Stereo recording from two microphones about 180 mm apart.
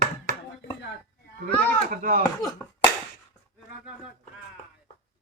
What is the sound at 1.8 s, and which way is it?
Speech, 50° right (ahead or behind).